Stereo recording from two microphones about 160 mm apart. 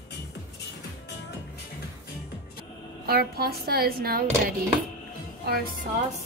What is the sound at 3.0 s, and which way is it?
Speech, 75° right (ahead or behind).